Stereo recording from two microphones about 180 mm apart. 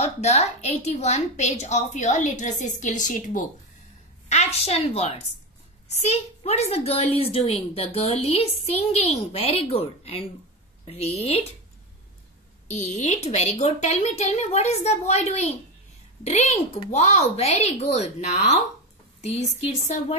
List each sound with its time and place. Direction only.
0.0 s a woman's voice: 35° left (ahead or behind)
12.6 s a woman's voice: 40° left (ahead or behind)